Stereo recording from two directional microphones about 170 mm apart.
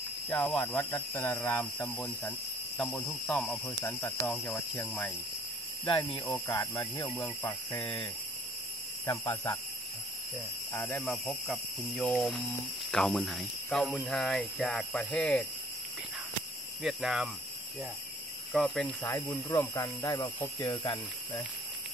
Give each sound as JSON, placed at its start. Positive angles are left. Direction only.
{"t": 0.3, "sound": "speech", "side_deg": 10}
{"t": 6.1, "sound": "speech", "side_deg": 15}
{"t": 9.0, "sound": "speech", "side_deg": 15}
{"t": 10.7, "sound": "speech", "side_deg": 10}
{"t": 16.8, "sound": "speech", "side_deg": 0}
{"t": 18.5, "sound": "speech", "side_deg": 0}
{"t": 19.0, "sound": "speech", "side_deg": 15}